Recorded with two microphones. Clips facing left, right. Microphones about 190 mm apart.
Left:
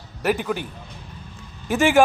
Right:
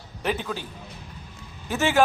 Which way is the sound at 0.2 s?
10° left (ahead or behind).